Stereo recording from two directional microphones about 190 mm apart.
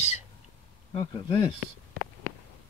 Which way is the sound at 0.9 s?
30° left (ahead or behind).